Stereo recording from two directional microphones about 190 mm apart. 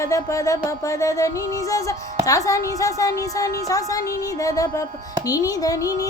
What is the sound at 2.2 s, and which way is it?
A woman's voice, 15° left (ahead or behind).